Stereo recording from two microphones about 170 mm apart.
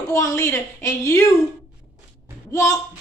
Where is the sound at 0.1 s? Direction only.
15° left (ahead or behind).